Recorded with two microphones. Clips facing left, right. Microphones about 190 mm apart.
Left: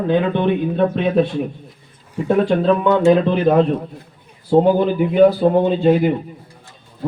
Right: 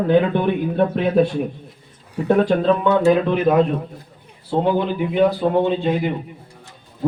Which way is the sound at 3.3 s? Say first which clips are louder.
Left 2 dB; 30° left (ahead or behind).